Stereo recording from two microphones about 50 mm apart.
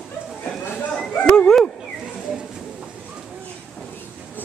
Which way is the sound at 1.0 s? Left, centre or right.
Left.